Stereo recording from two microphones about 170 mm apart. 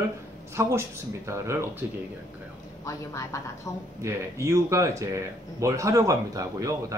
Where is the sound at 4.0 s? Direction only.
15° right (ahead or behind).